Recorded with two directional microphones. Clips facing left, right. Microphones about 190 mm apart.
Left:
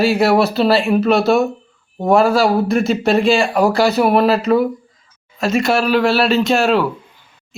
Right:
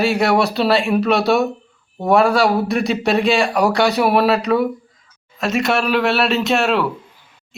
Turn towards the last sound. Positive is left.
turn(degrees=0)  # may be behind; listen again after turning